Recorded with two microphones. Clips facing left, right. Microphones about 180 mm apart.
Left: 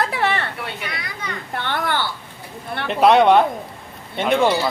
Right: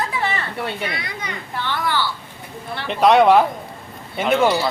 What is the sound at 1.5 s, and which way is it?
Speech, 55° left (ahead or behind).